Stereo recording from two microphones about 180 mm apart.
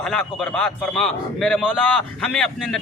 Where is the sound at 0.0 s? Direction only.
5° left (ahead or behind).